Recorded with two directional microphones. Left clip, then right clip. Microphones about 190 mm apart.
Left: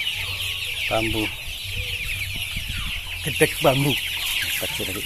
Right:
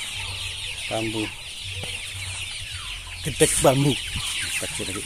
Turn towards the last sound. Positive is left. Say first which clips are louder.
# even
turn(degrees=-30)  # may be behind; listen again after turning